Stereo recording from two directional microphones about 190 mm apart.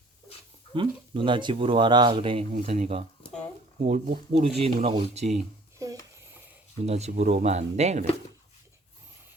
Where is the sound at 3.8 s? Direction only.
45° right (ahead or behind).